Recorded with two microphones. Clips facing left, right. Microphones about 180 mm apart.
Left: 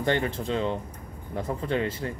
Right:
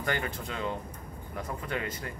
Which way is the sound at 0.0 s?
30° left (ahead or behind).